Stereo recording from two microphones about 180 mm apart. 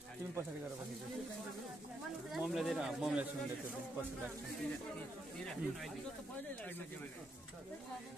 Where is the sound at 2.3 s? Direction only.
Centre (ahead or behind).